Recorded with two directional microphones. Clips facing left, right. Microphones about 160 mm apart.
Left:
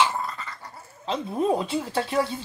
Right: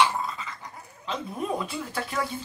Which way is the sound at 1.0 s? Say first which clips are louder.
Left 6 dB; 30° left (ahead or behind).